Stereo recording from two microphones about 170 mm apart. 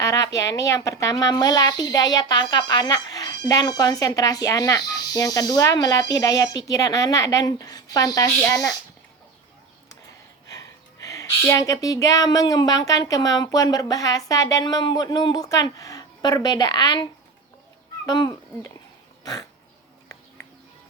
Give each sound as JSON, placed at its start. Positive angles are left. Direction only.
{"t": 0.0, "sound": "a woman's voice", "side_deg": 20}
{"t": 10.4, "sound": "a woman's voice", "side_deg": 20}
{"t": 19.2, "sound": "dog", "side_deg": 20}